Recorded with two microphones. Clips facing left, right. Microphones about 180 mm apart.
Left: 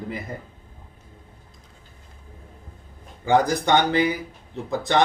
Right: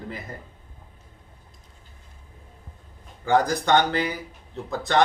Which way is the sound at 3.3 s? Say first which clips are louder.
Left 1 dB; 15° left (ahead or behind).